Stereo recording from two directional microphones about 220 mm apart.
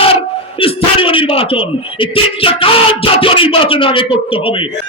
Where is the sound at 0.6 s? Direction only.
25° left (ahead or behind).